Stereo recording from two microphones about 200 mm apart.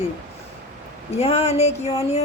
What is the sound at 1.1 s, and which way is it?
Speech, 30° left (ahead or behind).